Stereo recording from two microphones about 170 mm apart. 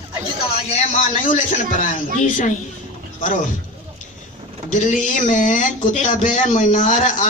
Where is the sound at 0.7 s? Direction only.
40° left (ahead or behind).